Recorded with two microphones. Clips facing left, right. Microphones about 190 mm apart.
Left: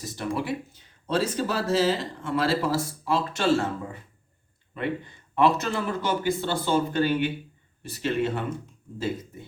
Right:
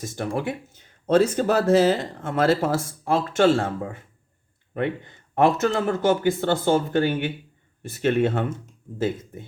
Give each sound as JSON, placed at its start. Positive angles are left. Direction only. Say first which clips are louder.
{"t": 0.0, "sound": "speech", "louder": "right 3 dB", "side_deg": -50}
{"t": 5.3, "sound": "speech", "louder": "right 3 dB", "side_deg": -50}